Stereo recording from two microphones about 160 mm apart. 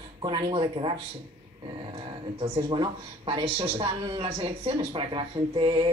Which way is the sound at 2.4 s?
35° right (ahead or behind).